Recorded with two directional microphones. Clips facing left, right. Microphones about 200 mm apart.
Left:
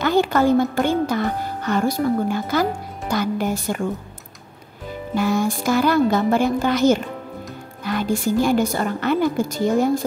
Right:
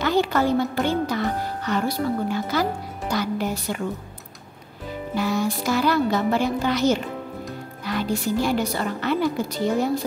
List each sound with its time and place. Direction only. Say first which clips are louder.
0.0 s a woman's voice: left 3 dB; 50° left (ahead or behind)
5.1 s a woman's voice: left 4 dB; 50° left (ahead or behind)